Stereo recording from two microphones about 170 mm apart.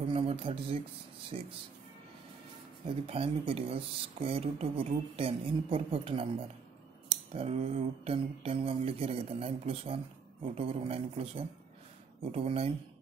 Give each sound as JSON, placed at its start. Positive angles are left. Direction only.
{"t": 0.1, "sound": "a sound", "side_deg": -35}
{"t": 1.3, "sound": "speech", "side_deg": -40}
{"t": 3.1, "sound": "speech", "side_deg": -35}